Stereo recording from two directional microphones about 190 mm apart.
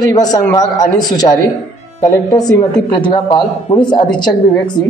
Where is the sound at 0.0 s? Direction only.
20° left (ahead or behind).